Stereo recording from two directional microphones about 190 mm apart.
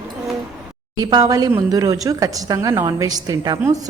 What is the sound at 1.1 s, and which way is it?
A woman's voice, 20° right (ahead or behind).